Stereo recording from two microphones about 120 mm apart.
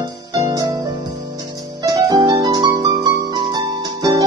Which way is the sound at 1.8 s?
35° right (ahead or behind).